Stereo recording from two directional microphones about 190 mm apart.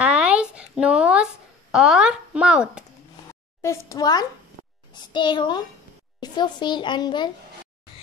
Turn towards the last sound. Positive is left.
turn(degrees=25)  # may be behind; listen again after turning